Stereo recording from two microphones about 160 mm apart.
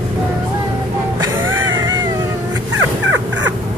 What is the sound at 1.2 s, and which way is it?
Music, 20° right (ahead or behind).